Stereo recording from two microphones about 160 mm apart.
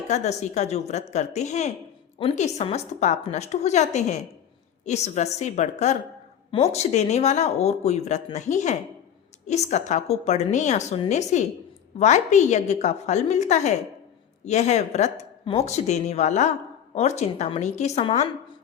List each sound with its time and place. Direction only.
0.1 s a woman's voice: 45° left (ahead or behind)